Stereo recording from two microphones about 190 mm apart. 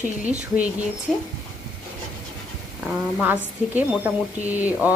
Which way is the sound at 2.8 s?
10° right (ahead or behind).